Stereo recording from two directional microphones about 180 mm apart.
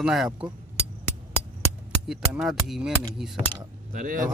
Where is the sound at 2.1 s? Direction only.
Centre (ahead or behind).